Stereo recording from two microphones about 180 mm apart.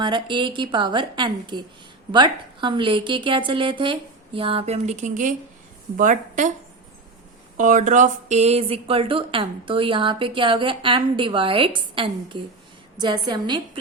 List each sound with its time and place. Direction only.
0.0 s speech: 25° right (ahead or behind); by 6.5 s 45° right (ahead or behind)
7.5 s speech: 45° right (ahead or behind); by 13.6 s 25° right (ahead or behind)